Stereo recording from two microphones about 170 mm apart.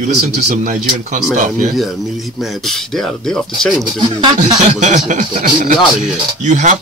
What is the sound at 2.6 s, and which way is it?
Speech, centre (ahead or behind).